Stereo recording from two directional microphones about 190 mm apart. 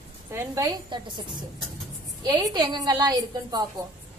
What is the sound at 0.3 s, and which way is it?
Speech, 15° right (ahead or behind).